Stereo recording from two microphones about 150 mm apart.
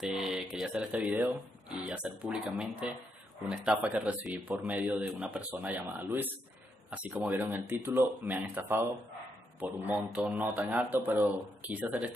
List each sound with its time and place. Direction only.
0.0 s mantra: centre (ahead or behind)
3.4 s speech: 5° right (ahead or behind)